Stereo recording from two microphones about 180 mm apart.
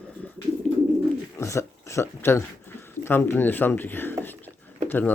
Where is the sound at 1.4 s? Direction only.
15° left (ahead or behind).